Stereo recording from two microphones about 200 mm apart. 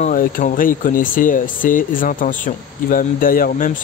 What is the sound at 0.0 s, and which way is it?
Speech, 40° left (ahead or behind).